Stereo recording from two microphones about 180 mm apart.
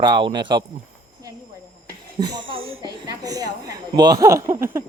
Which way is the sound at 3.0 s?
20° right (ahead or behind).